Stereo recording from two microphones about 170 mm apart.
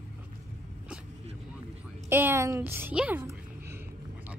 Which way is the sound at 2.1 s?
15° right (ahead or behind).